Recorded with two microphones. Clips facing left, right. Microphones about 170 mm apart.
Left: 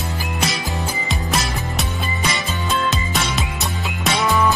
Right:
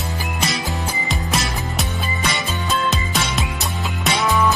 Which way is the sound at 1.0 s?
Centre (ahead or behind).